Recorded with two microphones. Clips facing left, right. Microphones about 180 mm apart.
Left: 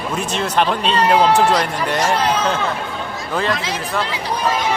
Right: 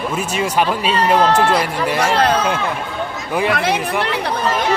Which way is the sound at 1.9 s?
65° right (ahead or behind).